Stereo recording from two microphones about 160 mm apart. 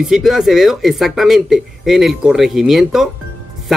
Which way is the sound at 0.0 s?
Centre (ahead or behind).